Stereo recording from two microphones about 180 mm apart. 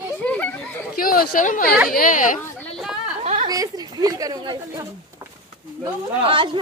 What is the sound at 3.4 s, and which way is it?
A woman's voice, 20° right (ahead or behind).